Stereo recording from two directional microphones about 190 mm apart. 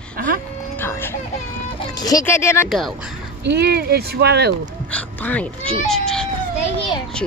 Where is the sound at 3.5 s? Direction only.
60° right (ahead or behind).